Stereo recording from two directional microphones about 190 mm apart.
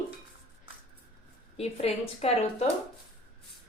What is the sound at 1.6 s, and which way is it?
Speech, 30° left (ahead or behind).